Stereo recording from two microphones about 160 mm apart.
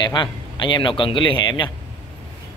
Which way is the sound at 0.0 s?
30° left (ahead or behind).